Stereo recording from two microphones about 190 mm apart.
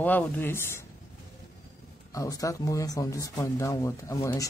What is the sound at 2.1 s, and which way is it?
Speech, 20° left (ahead or behind).